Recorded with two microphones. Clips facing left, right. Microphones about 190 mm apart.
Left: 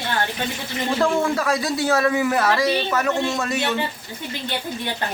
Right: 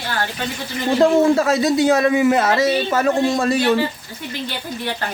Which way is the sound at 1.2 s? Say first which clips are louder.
Right 6 dB; 25° right (ahead or behind).